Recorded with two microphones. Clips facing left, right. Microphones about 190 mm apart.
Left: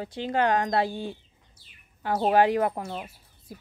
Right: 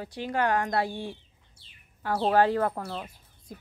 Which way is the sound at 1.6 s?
25° right (ahead or behind).